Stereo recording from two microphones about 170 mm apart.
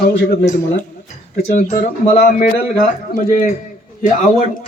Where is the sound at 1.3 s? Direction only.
45° left (ahead or behind).